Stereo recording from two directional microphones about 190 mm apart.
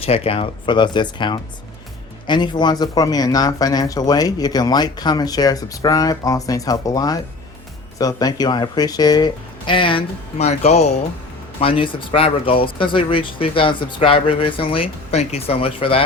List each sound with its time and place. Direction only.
0.0 s speech: 30° left (ahead or behind)